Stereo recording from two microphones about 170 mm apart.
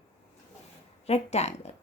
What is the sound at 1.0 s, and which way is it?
Speech, 40° left (ahead or behind).